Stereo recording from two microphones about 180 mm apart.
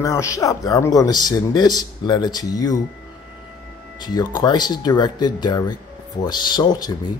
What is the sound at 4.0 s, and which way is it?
Speech, 25° left (ahead or behind).